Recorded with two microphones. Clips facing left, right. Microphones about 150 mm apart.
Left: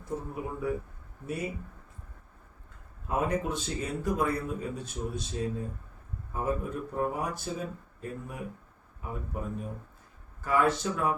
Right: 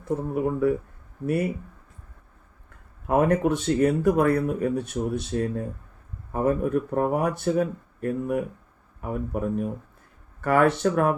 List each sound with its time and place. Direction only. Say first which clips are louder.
0.3 s speech: right 11 dB; 60° right (ahead or behind)
3.1 s speech: right 9 dB; 65° right (ahead or behind)